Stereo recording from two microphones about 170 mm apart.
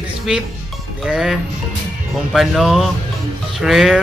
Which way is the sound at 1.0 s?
5° right (ahead or behind).